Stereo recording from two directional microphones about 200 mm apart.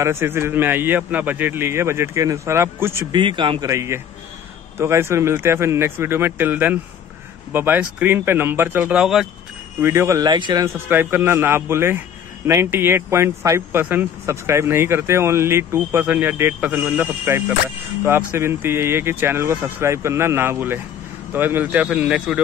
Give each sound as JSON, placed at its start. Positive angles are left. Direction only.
{"t": 0.0, "sound": "speech", "side_deg": -10}
{"t": 3.2, "sound": "a man's voice", "side_deg": -25}
{"t": 9.8, "sound": "speech", "side_deg": -15}